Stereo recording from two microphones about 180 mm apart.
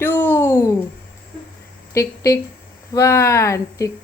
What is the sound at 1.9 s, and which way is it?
Speech, 15° left (ahead or behind).